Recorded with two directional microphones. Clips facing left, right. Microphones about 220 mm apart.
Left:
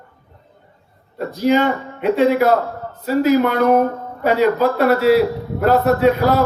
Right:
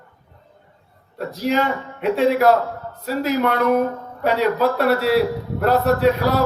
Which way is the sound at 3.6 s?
40° left (ahead or behind).